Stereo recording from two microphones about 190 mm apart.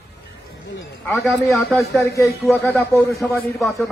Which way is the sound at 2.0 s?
15° left (ahead or behind).